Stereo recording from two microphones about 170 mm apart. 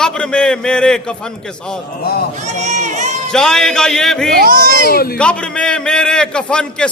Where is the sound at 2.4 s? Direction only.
45° right (ahead or behind).